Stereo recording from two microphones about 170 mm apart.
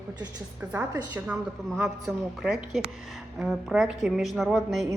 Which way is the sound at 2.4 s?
5° right (ahead or behind).